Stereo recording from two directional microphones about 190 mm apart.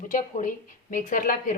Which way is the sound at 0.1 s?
40° left (ahead or behind).